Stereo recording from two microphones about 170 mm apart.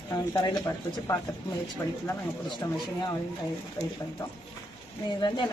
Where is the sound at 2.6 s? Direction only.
20° left (ahead or behind).